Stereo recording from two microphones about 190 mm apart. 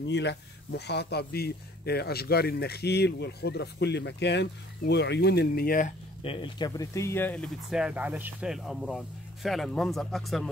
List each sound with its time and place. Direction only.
0.0 s speech: 65° left (ahead or behind); by 5.9 s 45° left (ahead or behind)
6.2 s speech: 25° left (ahead or behind); by 10.5 s centre (ahead or behind)